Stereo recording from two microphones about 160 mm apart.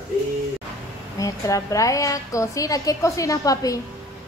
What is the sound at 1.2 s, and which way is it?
A woman's voice, 20° left (ahead or behind).